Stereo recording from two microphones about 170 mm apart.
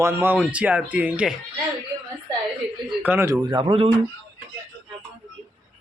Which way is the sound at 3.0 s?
10° right (ahead or behind).